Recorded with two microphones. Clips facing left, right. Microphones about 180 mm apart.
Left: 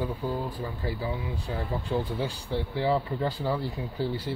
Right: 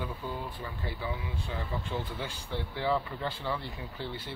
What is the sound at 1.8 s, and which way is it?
Speech, 35° left (ahead or behind).